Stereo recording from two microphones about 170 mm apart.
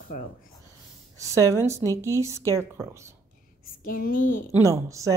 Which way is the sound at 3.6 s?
55° left (ahead or behind).